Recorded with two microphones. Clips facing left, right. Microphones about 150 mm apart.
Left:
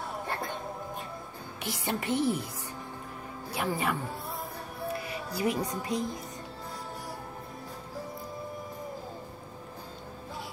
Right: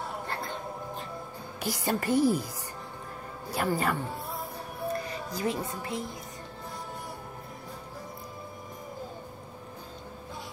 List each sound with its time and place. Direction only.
1.6 s a woman's voice: centre (ahead or behind)
3.5 s a woman's voice: 5° left (ahead or behind)
5.0 s speech: 10° left (ahead or behind)